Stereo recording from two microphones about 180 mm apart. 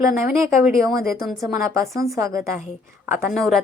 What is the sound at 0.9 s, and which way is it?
Speech, 15° right (ahead or behind).